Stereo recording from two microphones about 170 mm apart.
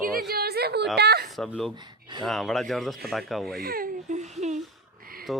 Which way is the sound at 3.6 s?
60° right (ahead or behind).